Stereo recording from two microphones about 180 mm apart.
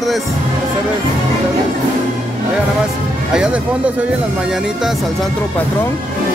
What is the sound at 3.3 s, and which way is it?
Speech, 5° right (ahead or behind).